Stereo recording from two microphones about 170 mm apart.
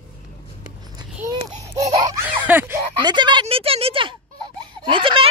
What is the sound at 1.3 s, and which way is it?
Speech, 20° right (ahead or behind).